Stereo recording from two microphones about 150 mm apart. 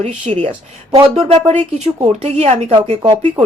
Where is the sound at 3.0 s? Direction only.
30° right (ahead or behind).